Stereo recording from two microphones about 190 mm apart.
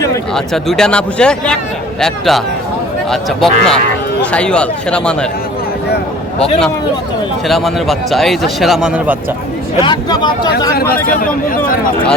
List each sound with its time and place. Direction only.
0.3 s speech: centre (ahead or behind)
7.4 s speech: centre (ahead or behind)
9.8 s speech: 25° left (ahead or behind)
10.9 s speech: 50° left (ahead or behind)